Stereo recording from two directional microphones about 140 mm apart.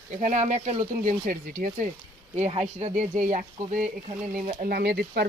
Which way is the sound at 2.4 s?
50° right (ahead or behind).